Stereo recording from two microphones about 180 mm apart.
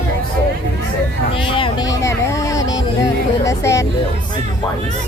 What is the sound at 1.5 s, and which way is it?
Vehicle, 30° left (ahead or behind).